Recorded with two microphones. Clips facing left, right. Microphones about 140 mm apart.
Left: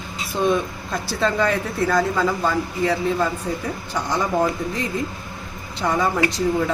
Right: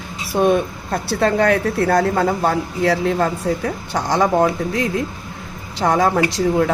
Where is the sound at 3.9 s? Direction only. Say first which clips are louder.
Right 5 dB; 80° right.